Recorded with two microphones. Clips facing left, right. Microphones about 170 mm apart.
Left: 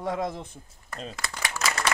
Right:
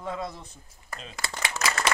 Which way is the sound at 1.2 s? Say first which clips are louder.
Right 3 dB; 25° right (ahead or behind).